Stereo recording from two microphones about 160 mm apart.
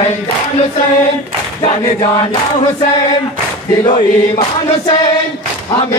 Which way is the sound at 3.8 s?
35° left (ahead or behind).